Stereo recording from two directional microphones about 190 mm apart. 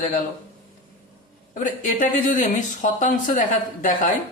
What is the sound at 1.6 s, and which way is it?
Speech, 45° left (ahead or behind).